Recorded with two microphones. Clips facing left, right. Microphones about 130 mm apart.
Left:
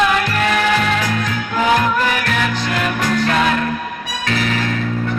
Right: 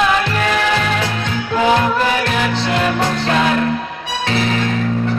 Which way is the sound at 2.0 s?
30° right (ahead or behind).